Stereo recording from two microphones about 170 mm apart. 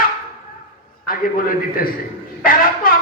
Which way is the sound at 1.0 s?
60° left (ahead or behind).